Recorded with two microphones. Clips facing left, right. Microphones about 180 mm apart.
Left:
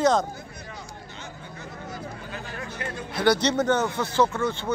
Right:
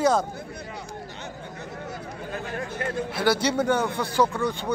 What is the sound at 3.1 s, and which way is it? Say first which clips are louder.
Speech: left 3 dB; 5° right (ahead or behind).